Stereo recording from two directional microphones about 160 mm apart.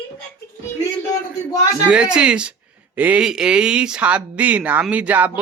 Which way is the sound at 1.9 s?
5° right (ahead or behind).